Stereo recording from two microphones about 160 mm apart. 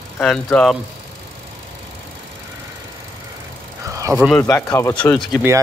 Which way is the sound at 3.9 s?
20° right (ahead or behind).